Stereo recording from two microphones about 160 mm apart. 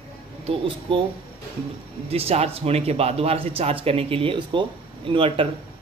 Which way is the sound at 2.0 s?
40° right (ahead or behind).